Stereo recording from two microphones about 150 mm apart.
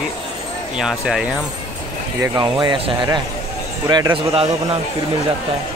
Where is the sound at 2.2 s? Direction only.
25° right (ahead or behind).